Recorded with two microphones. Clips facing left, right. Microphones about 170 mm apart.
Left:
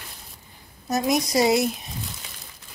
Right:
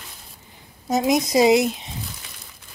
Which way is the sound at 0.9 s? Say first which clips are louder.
Right 3 dB; 20° right (ahead or behind).